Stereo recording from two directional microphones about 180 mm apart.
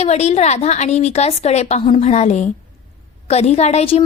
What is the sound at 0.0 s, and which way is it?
A woman's voice, 35° left (ahead or behind).